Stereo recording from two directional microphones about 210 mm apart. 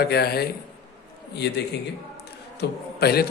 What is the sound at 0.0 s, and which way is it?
A man's voice, 50° left (ahead or behind).